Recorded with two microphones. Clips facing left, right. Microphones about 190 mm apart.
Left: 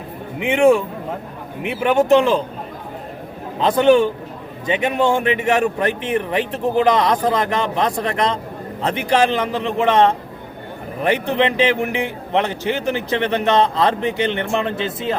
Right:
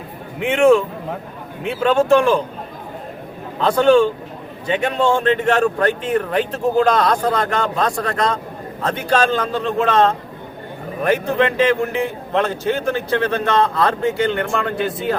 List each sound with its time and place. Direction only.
0.3 s speech: 15° left (ahead or behind)
3.6 s speech: 15° left (ahead or behind)